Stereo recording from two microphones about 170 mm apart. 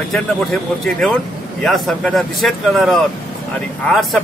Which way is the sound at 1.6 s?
Centre (ahead or behind).